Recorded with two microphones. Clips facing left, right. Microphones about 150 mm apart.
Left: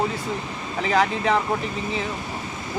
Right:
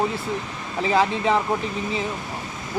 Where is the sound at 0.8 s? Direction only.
25° right (ahead or behind).